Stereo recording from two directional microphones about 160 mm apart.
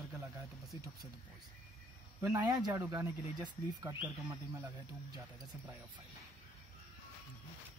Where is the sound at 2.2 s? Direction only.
20° right (ahead or behind).